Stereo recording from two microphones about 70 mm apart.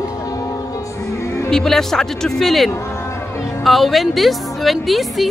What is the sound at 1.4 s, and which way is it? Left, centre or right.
A woman's voice, centre.